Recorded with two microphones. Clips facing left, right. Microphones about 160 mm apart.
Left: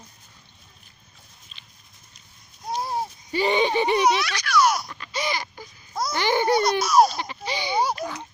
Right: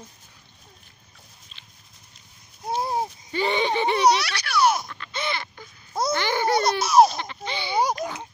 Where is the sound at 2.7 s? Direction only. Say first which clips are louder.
Right 2 dB; 25° right (ahead or behind).